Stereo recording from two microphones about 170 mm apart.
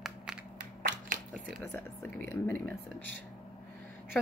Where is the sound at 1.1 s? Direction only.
50° right (ahead or behind).